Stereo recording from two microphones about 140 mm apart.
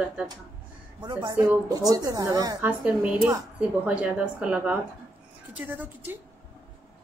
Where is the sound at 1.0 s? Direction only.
30° right (ahead or behind).